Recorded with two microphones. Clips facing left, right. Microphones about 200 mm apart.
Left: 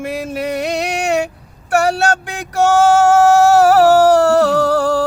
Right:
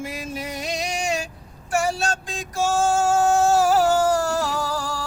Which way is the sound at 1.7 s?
70° left (ahead or behind).